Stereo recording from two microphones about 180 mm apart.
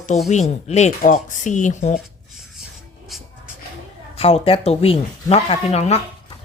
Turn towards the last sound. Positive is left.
turn(degrees=35)  # may be behind; listen again after turning